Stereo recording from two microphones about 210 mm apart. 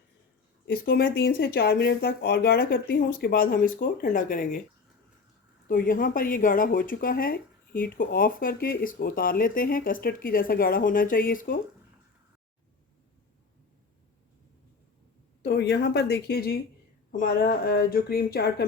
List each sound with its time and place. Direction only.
0.6 s speech: 50° left (ahead or behind)
5.6 s speech: 40° left (ahead or behind)
15.4 s speech: 50° left (ahead or behind)